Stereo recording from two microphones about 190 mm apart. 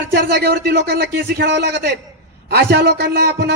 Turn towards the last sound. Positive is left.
turn(degrees=-60)  # may be behind; listen again after turning